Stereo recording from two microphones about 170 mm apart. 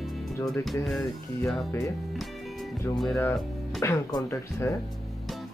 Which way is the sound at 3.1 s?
20° left (ahead or behind).